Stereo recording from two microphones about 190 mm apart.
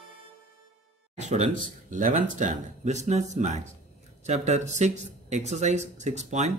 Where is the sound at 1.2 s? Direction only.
40° right (ahead or behind).